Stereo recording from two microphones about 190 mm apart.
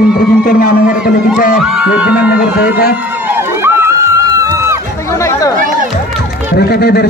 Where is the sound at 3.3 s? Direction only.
10° right (ahead or behind).